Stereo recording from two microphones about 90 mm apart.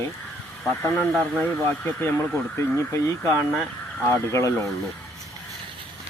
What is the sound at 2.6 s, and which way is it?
A man's voice, 30° left (ahead or behind).